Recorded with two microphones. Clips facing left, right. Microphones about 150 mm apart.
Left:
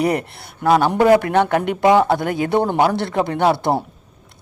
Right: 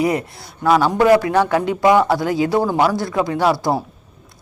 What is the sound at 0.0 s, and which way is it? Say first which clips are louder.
Speech: even; 60° left (ahead or behind).